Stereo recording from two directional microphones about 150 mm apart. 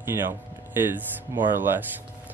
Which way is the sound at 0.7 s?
15° right (ahead or behind).